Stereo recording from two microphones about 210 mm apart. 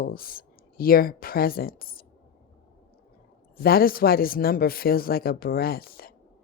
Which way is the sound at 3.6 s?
45° left (ahead or behind).